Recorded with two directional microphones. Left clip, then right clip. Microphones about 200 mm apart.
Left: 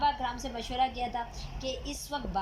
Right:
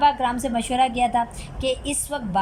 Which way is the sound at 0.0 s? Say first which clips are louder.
Right 10 dB; 60° right (ahead or behind).